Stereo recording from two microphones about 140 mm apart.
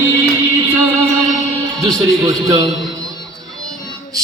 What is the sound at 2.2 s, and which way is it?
Speech, 25° right (ahead or behind).